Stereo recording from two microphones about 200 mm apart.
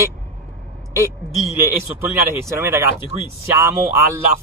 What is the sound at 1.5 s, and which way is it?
Speech, 10° right (ahead or behind).